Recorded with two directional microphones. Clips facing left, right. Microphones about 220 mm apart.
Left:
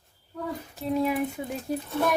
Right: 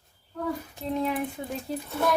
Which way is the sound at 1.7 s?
15° left (ahead or behind).